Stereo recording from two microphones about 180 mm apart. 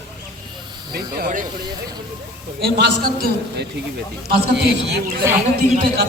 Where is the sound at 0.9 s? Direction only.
55° right (ahead or behind).